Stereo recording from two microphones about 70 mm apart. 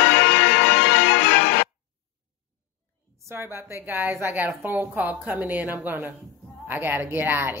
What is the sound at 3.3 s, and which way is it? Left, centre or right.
A woman's voice, right.